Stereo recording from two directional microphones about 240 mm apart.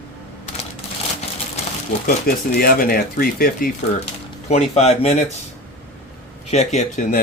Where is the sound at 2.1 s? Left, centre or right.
Left.